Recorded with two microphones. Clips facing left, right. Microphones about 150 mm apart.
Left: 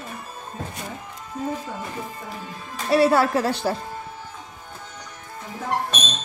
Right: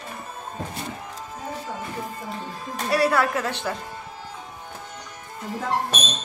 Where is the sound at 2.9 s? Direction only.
25° left (ahead or behind).